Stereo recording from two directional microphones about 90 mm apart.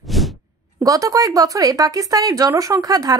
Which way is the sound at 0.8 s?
40° right (ahead or behind).